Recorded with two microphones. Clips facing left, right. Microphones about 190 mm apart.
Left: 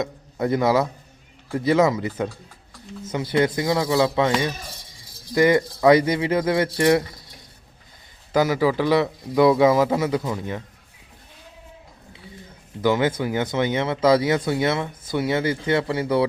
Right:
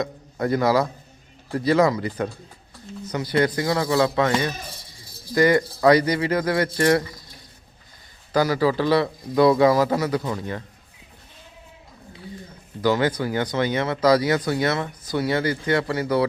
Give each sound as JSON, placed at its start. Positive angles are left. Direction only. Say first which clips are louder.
{"t": 0.0, "sound": "a man's voice", "louder": "left 1 dB", "side_deg": 20}
{"t": 8.3, "sound": "speech", "louder": "left 1 dB", "side_deg": 20}
{"t": 12.8, "sound": "speech", "louder": "even", "side_deg": 20}